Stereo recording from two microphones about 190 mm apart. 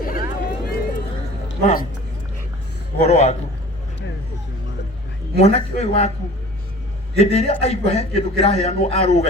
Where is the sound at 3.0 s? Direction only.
35° left (ahead or behind).